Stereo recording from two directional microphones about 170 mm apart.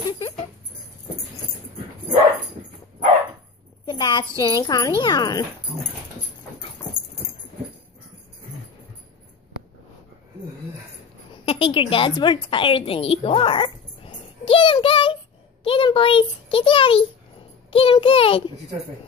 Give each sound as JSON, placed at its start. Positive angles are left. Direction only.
{"t": 3.8, "sound": "a sound", "side_deg": 25}
{"t": 4.4, "sound": "speech", "side_deg": 25}
{"t": 11.4, "sound": "a woman's voice", "side_deg": 30}
{"t": 17.6, "sound": "child singing", "side_deg": 30}